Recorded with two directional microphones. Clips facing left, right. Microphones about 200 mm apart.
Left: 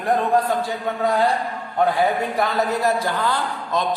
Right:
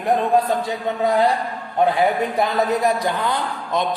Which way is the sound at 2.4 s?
15° right (ahead or behind).